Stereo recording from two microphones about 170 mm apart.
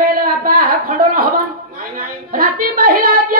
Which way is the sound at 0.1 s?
60° right (ahead or behind).